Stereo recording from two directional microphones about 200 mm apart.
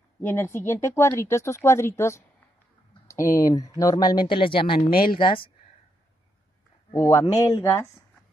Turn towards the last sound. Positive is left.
turn(degrees=15)  # may be behind; listen again after turning